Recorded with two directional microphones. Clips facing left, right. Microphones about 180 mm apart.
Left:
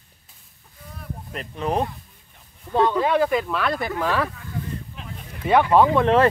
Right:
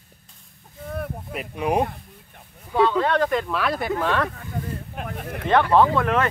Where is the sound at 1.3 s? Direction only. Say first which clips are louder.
Right 1 dB; 10° right (ahead or behind).